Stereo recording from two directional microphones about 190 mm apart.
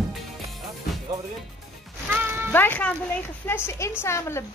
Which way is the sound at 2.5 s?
10° left (ahead or behind).